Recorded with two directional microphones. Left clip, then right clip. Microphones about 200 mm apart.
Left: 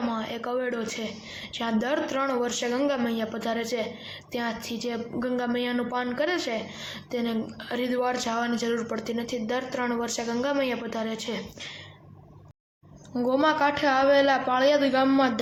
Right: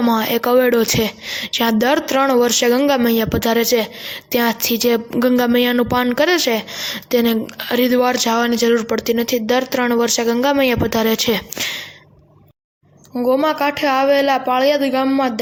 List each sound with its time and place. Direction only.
0.1 s a woman's voice: 55° right (ahead or behind)
13.1 s a woman's voice: 35° right (ahead or behind)